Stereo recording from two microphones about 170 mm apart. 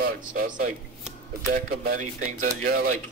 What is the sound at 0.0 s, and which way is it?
A man's voice, 55° right (ahead or behind).